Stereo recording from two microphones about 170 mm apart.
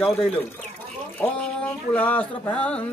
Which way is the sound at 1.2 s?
10° left (ahead or behind).